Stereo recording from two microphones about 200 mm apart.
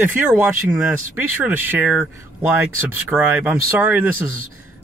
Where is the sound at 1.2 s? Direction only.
10° right (ahead or behind).